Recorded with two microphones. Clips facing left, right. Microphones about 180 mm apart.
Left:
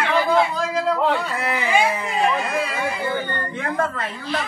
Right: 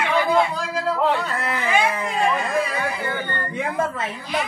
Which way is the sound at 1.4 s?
5° left (ahead or behind).